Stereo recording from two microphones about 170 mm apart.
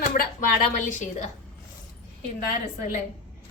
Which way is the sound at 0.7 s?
45° left (ahead or behind).